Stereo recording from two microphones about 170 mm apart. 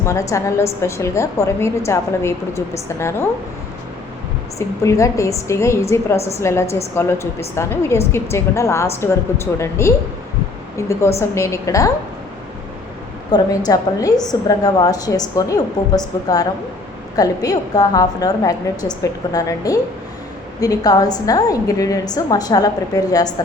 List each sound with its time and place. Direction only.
0.0 s a woman's voice: 15° left (ahead or behind)
4.5 s a woman's voice: 20° left (ahead or behind)
13.3 s a woman's voice: 25° left (ahead or behind)
17.2 s a woman's voice: 20° left (ahead or behind)